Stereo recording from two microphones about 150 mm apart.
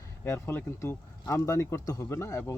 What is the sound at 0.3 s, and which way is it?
Speech, 15° left (ahead or behind).